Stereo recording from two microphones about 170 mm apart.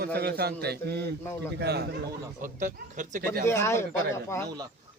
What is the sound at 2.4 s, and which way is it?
Speech, 50° right (ahead or behind).